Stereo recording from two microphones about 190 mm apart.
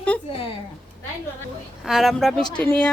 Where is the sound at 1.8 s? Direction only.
Centre (ahead or behind).